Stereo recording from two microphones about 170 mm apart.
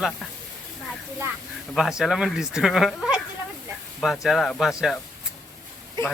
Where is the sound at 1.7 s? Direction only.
Centre (ahead or behind).